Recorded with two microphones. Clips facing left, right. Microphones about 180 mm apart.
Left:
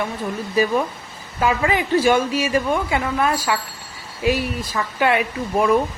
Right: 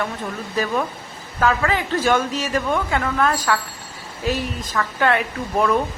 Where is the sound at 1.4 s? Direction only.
15° left (ahead or behind).